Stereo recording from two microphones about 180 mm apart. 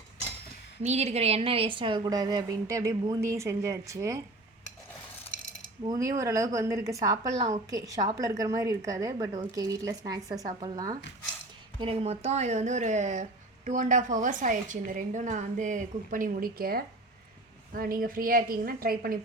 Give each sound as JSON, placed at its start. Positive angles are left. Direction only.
{"t": 0.8, "sound": "a woman's voice", "side_deg": -35}
{"t": 5.8, "sound": "a woman's voice", "side_deg": -20}
{"t": 11.8, "sound": "a woman's voice", "side_deg": -35}